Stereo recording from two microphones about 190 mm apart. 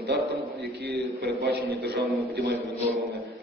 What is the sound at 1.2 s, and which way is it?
Speech, 55° right (ahead or behind).